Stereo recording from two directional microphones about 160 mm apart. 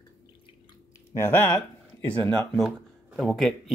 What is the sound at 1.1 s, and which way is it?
Speech, 15° left (ahead or behind).